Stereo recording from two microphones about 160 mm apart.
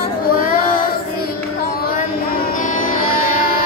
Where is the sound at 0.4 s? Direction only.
60° left (ahead or behind).